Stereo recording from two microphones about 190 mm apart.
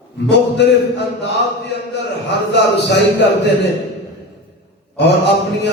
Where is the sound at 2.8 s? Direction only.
65° left (ahead or behind).